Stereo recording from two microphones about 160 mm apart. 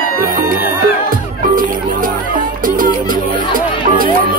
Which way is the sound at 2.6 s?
60° right (ahead or behind).